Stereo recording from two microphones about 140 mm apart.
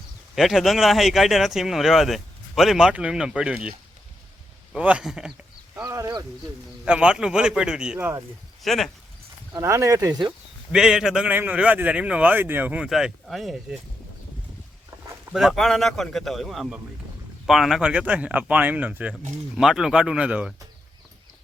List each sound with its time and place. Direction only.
0.3 s speech: centre (ahead or behind)
6.0 s speech: 30° right (ahead or behind)
6.4 s speech: 5° right (ahead or behind)
7.9 s a man's voice: 15° right (ahead or behind)
8.6 s speech: centre (ahead or behind)
9.5 s speech: 20° right (ahead or behind)
10.7 s a man's voice: 5° right (ahead or behind)
15.3 s a man's voice: centre (ahead or behind)